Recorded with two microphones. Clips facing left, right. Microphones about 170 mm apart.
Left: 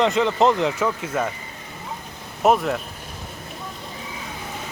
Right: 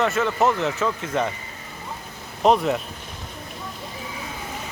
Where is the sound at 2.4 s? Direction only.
5° left (ahead or behind).